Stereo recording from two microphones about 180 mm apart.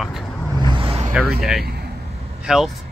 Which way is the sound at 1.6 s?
65° right (ahead or behind).